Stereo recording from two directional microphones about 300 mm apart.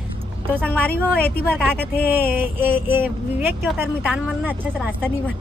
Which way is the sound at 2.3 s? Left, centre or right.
Centre.